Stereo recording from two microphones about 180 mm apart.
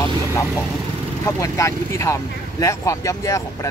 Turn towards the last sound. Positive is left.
turn(degrees=15)  # may be behind; listen again after turning